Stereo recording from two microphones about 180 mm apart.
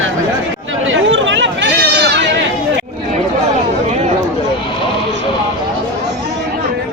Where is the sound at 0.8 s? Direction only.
90° right; by 2.3 s 70° right (ahead or behind).